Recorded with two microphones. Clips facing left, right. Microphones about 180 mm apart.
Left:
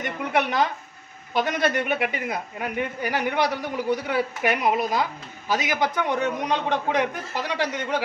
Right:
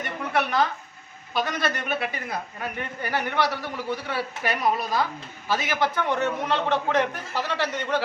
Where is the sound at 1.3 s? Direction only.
20° left (ahead or behind).